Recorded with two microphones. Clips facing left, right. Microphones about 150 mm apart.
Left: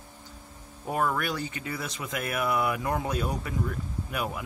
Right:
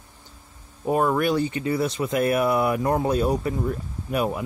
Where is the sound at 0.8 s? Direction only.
25° right (ahead or behind).